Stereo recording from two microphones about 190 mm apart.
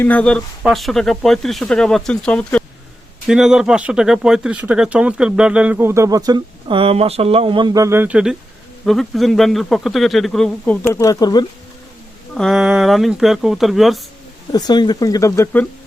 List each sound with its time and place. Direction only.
0.0 s speech: 5° left (ahead or behind)
10.8 s speech: 15° left (ahead or behind)
12.3 s speech: centre (ahead or behind)
14.5 s speech: 20° left (ahead or behind)